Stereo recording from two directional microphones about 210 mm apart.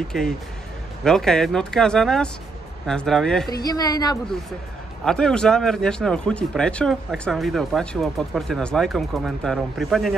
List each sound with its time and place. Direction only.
0.1 s a man's voice: centre (ahead or behind)
3.6 s a woman's voice: 20° left (ahead or behind)
5.0 s a man's voice: 5° left (ahead or behind)